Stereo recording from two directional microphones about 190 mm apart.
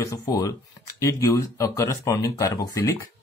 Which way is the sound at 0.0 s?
20° left (ahead or behind).